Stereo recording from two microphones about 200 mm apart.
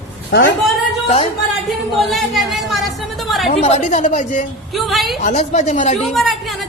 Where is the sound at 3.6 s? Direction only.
35° left (ahead or behind).